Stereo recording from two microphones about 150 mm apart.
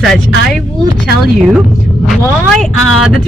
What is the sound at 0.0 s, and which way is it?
Speech, centre (ahead or behind).